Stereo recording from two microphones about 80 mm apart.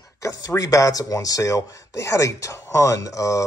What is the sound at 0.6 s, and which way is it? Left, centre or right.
Speech, left.